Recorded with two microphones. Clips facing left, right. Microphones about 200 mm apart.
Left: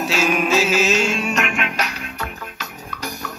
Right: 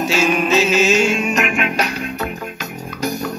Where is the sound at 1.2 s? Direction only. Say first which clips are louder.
Right 4 dB; 15° right (ahead or behind).